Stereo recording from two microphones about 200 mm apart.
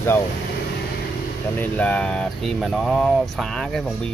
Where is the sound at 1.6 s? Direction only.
5° left (ahead or behind).